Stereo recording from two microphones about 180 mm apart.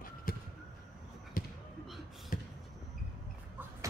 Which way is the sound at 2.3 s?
50° left (ahead or behind).